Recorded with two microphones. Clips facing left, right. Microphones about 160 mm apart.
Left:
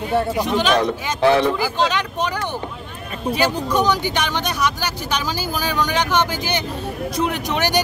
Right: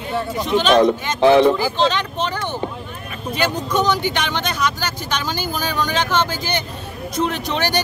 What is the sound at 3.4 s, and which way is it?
Speech, 10° left (ahead or behind).